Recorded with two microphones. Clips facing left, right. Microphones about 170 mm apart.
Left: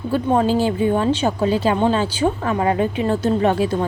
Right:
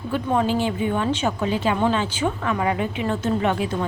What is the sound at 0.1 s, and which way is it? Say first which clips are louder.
Speech: left 4 dB; 35° left (ahead or behind).